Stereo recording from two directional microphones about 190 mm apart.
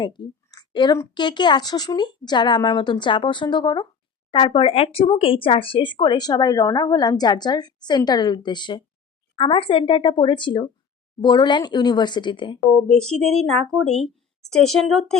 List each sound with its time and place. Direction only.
0.0 s a woman's voice: 25° left (ahead or behind)
13.1 s a woman's voice: centre (ahead or behind)